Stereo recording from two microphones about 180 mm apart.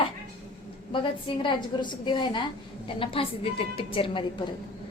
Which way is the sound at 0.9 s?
30° left (ahead or behind).